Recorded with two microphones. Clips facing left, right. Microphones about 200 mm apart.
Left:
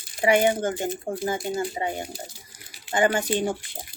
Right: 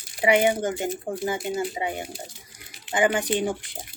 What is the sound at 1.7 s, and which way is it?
Speech, 15° right (ahead or behind).